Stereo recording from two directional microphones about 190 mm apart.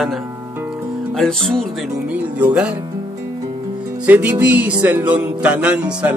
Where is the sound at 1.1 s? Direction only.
5° left (ahead or behind).